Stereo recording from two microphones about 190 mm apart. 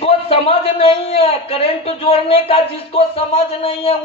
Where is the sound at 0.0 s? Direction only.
30° left (ahead or behind).